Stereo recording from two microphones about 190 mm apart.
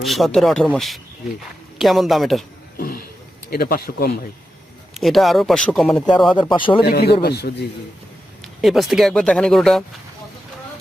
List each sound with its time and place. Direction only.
0.0 s speech: centre (ahead or behind)
2.7 s a sound: 50° left (ahead or behind)
3.5 s speech: 50° left (ahead or behind)
4.9 s speech: centre (ahead or behind)
6.5 s speech: 25° left (ahead or behind)
6.8 s a man's voice: 60° left (ahead or behind)
8.6 s speech: centre (ahead or behind)